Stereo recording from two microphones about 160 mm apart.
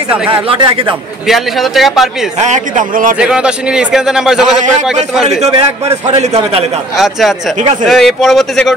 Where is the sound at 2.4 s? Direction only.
50° right (ahead or behind).